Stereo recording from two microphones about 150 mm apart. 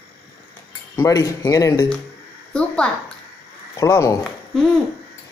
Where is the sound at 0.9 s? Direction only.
20° left (ahead or behind).